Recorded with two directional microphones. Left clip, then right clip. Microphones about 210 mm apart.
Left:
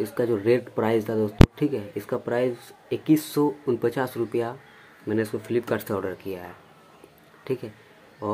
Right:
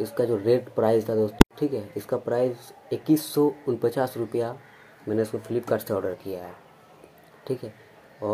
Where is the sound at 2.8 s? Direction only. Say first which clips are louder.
Left 1 dB; centre (ahead or behind).